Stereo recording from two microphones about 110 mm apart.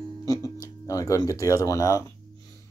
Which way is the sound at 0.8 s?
30° left (ahead or behind).